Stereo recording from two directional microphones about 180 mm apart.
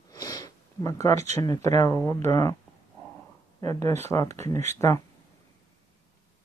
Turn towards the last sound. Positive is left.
turn(degrees=15)  # may be behind; listen again after turning